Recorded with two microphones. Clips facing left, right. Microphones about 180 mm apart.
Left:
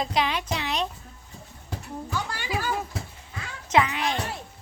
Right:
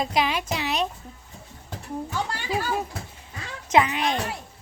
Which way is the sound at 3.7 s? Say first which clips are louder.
Right 2 dB; 20° right (ahead or behind).